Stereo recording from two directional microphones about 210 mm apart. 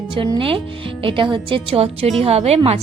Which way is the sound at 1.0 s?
25° right (ahead or behind).